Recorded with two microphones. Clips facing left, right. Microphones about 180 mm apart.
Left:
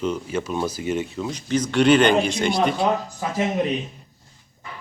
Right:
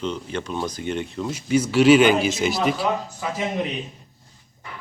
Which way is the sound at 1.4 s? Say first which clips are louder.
Right 2 dB; 10° right (ahead or behind).